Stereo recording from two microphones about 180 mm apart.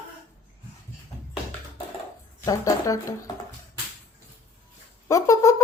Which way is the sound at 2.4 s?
20° left (ahead or behind).